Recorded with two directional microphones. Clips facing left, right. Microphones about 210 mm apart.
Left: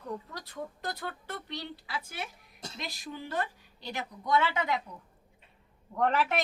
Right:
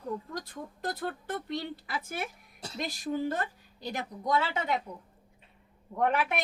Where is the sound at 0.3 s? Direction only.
45° right (ahead or behind).